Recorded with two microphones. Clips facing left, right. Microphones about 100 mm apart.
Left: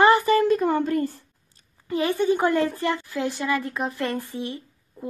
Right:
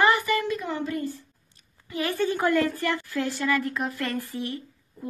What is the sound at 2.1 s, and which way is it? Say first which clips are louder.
A woman's voice: left 1 dB; 20° left (ahead or behind).